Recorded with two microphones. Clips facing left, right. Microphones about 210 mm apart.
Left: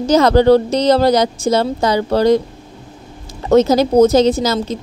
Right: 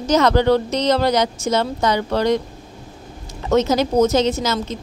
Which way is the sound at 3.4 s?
35° left (ahead or behind).